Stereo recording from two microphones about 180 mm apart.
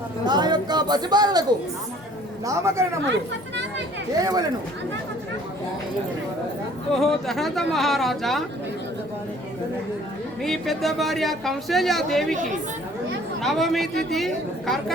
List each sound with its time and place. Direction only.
0.3 s speech: 25° right (ahead or behind)
2.5 s speech: 15° right (ahead or behind)
3.1 s speech: 75° right (ahead or behind)
4.2 s speech: 20° right (ahead or behind)
6.9 s speech: centre (ahead or behind)
10.4 s speech: centre (ahead or behind)
13.4 s speech: centre (ahead or behind)